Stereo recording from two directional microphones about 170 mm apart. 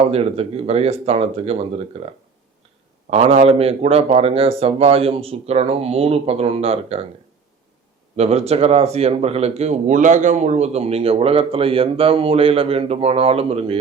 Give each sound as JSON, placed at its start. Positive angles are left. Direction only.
{"t": 0.1, "sound": "speech", "side_deg": -35}
{"t": 8.1, "sound": "speech", "side_deg": -40}